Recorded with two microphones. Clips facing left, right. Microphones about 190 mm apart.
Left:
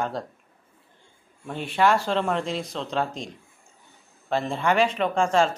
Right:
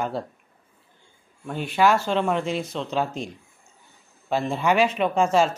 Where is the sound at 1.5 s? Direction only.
Centre (ahead or behind).